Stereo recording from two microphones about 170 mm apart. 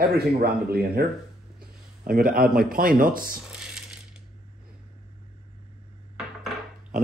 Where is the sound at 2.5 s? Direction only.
55° right (ahead or behind).